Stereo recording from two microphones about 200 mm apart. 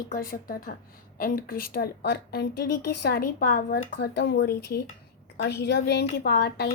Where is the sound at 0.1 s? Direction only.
45° left (ahead or behind).